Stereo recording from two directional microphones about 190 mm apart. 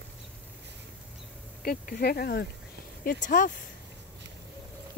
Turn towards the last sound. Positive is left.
turn(degrees=45)  # may be behind; listen again after turning